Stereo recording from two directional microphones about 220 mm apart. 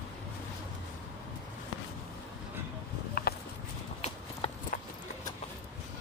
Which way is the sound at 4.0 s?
30° left (ahead or behind).